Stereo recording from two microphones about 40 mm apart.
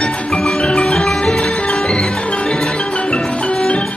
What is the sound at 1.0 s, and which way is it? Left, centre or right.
Music, centre.